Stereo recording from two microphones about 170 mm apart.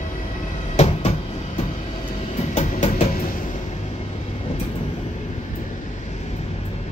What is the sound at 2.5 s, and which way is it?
Music, 40° left (ahead or behind).